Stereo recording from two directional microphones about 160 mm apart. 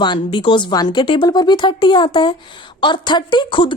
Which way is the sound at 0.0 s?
30° left (ahead or behind).